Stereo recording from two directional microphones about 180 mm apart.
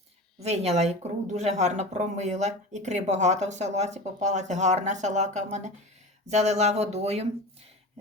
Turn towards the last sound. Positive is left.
turn(degrees=-35)  # may be behind; listen again after turning